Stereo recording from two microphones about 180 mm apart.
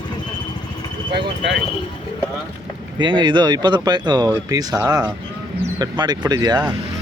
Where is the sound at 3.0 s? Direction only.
25° right (ahead or behind).